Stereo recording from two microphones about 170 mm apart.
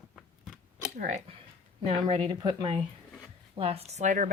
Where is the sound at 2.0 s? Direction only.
25° right (ahead or behind).